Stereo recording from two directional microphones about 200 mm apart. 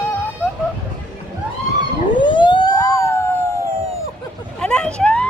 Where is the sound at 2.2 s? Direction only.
25° left (ahead or behind).